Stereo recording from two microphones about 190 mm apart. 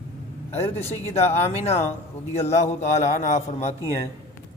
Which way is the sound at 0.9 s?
35° left (ahead or behind).